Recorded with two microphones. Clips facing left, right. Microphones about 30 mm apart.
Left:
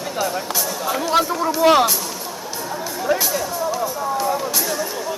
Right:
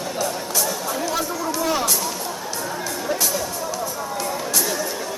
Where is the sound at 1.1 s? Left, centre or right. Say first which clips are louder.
Left 6 dB; left.